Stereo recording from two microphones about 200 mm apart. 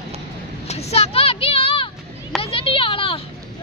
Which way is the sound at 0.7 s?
30° left (ahead or behind).